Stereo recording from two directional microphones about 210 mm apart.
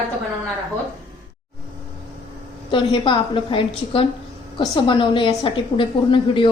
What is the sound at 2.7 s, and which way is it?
A woman's voice, 25° left (ahead or behind).